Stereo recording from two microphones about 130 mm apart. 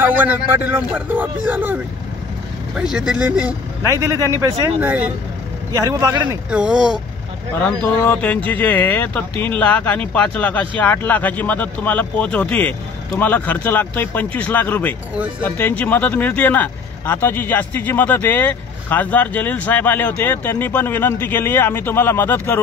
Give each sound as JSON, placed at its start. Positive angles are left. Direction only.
{"t": 0.0, "sound": "speech", "side_deg": -15}
{"t": 3.8, "sound": "a man's voice", "side_deg": -25}
{"t": 4.7, "sound": "speech", "side_deg": -10}
{"t": 5.8, "sound": "a man's voice", "side_deg": -25}
{"t": 6.5, "sound": "speech", "side_deg": -5}
{"t": 7.6, "sound": "speech", "side_deg": 15}